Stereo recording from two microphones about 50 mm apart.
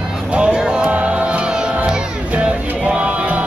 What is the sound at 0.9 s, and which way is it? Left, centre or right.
Music, right.